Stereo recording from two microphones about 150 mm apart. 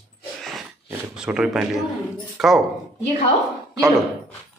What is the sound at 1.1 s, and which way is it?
Speech, 5° right (ahead or behind).